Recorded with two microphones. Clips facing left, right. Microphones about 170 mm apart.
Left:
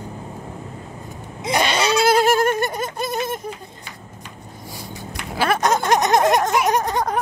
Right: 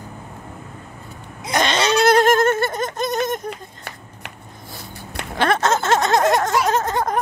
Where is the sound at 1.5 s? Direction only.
10° left (ahead or behind).